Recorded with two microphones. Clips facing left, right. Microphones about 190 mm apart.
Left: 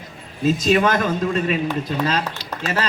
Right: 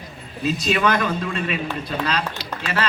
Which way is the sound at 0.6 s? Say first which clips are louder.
Left 2 dB; 40° left (ahead or behind).